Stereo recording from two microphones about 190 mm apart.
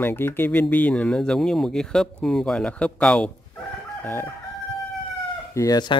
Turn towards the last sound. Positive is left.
turn(degrees=20)  # may be behind; listen again after turning